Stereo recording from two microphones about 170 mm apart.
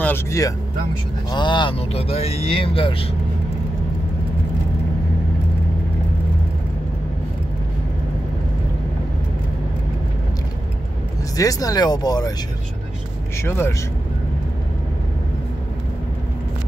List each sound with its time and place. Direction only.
0.0 s speech: 15° left (ahead or behind)
1.3 s speech: 25° left (ahead or behind)
11.3 s speech: 20° left (ahead or behind)
13.4 s a man's voice: 15° left (ahead or behind)